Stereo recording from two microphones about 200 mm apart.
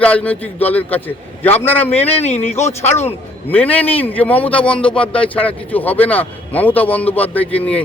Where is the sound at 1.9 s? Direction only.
30° left (ahead or behind).